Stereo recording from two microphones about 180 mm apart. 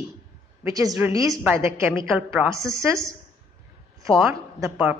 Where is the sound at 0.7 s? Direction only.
15° right (ahead or behind).